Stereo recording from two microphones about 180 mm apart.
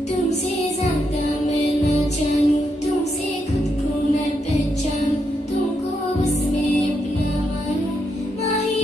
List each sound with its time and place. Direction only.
1.5 s music: 40° left (ahead or behind)